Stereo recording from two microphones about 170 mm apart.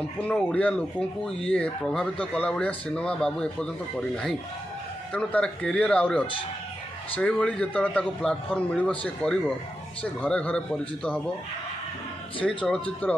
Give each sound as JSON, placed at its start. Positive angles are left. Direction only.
{"t": 0.2, "sound": "speech", "side_deg": 5}
{"t": 5.1, "sound": "a man's voice", "side_deg": 5}
{"t": 12.6, "sound": "speech", "side_deg": 5}